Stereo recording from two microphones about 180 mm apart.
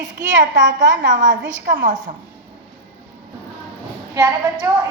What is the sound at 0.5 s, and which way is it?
A woman's voice, 45° right (ahead or behind).